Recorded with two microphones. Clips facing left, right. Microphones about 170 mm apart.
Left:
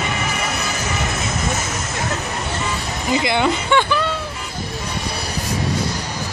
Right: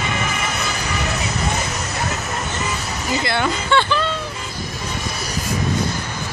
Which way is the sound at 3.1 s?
15° left (ahead or behind).